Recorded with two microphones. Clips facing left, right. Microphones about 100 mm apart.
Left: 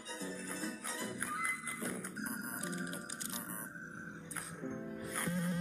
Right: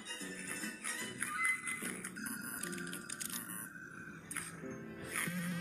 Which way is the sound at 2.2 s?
30° left (ahead or behind).